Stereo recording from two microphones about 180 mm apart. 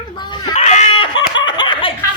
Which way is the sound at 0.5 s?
40° left (ahead or behind).